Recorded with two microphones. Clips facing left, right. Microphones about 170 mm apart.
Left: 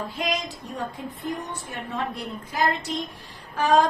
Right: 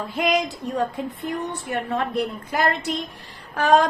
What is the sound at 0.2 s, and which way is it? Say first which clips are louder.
A woman's voice: right 9 dB; 65° right (ahead or behind).